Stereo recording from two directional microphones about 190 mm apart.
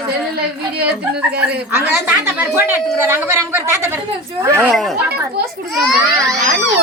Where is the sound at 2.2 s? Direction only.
10° right (ahead or behind).